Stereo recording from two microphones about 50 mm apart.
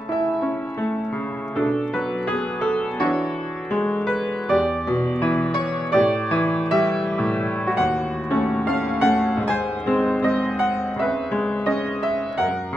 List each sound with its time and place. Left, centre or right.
2.6 s music: left
4.1 s music: centre
5.2 s music: left
5.5 s music: centre
6.3 s music: left
8.3 s music: centre
9.0 s music: centre
9.9 s music: left
11.3 s music: centre